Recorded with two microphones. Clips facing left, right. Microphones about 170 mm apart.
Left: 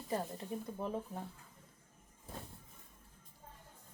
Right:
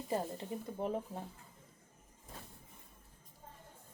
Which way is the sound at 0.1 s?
25° right (ahead or behind).